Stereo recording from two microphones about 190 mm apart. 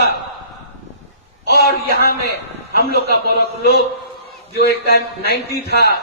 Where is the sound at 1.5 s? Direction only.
55° left (ahead or behind).